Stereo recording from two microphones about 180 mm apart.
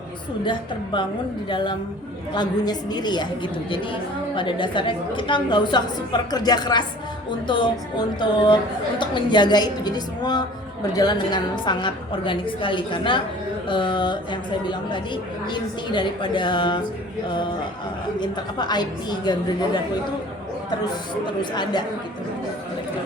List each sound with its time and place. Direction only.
1.5 s a woman's voice: 25° left (ahead or behind)
18.2 s a woman's voice: 25° left (ahead or behind)